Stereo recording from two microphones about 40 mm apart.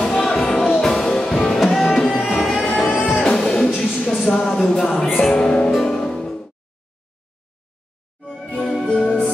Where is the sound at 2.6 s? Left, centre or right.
Left.